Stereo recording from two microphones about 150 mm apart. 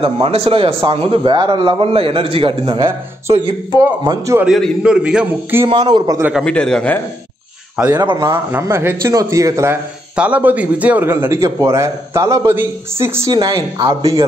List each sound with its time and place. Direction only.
0.0 s a man's voice: 40° right (ahead or behind)
4.5 s a man's voice: 5° right (ahead or behind)
5.7 s speech: 30° right (ahead or behind)
6.4 s a man's voice: 5° left (ahead or behind)
7.9 s a man's voice: 25° right (ahead or behind)
10.1 s a man's voice: 10° right (ahead or behind)